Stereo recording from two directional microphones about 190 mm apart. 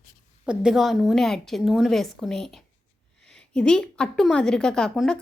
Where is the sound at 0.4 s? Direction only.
5° right (ahead or behind).